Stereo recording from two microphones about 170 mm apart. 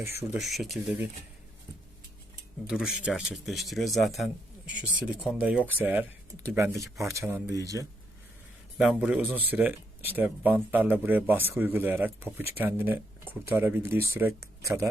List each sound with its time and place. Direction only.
0.0 s speech: 15° right (ahead or behind)
0.3 s a man's voice: centre (ahead or behind)
2.6 s a man's voice: 5° right (ahead or behind); by 7.9 s 20° right (ahead or behind)
8.8 s speech: 5° right (ahead or behind)